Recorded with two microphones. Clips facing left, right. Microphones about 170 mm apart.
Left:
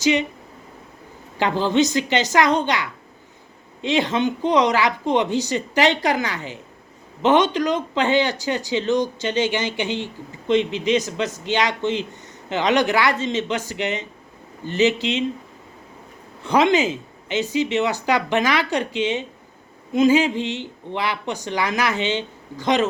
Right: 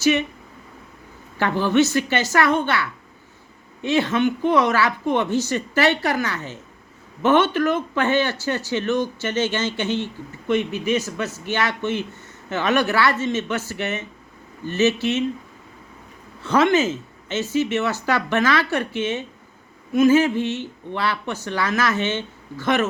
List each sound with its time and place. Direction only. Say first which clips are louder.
0.0 s speech: even; 15° left (ahead or behind)
1.4 s speech: even; 15° left (ahead or behind)
16.4 s speech: even; 15° left (ahead or behind)